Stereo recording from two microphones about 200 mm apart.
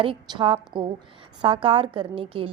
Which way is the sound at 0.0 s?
25° right (ahead or behind).